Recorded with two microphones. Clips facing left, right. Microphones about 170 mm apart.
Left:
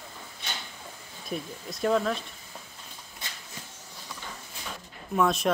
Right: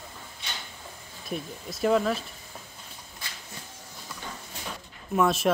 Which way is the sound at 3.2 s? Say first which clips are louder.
Left 1 dB; 20° left (ahead or behind).